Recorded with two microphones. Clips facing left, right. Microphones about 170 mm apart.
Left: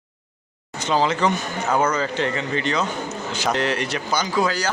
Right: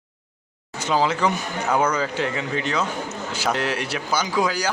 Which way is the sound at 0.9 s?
10° right (ahead or behind).